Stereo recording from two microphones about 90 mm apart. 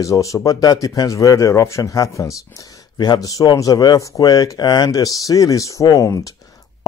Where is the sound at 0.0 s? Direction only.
35° left (ahead or behind).